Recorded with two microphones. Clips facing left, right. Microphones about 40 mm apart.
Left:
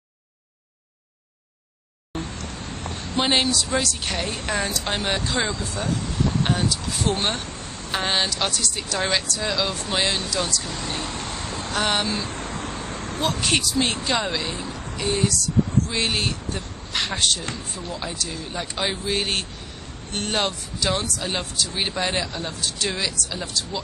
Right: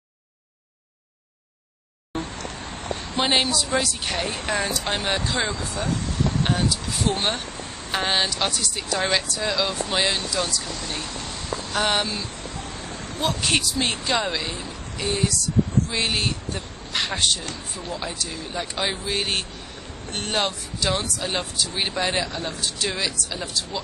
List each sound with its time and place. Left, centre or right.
2.1 s vehicle: right
3.2 s speech: centre
12.1 s a sound: left
13.2 s speech: centre